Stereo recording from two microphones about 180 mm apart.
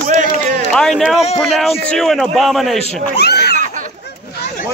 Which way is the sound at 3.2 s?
65° left (ahead or behind).